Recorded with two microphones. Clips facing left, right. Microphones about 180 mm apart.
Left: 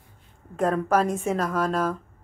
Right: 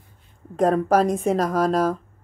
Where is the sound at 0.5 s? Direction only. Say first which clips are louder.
Right 4 dB; 35° right (ahead or behind).